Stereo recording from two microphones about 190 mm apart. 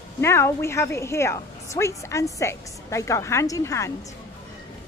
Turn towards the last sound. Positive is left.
turn(degrees=15)  # may be behind; listen again after turning